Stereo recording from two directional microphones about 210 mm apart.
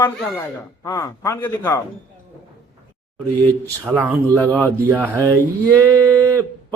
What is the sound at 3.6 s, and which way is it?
Speech, 10° right (ahead or behind).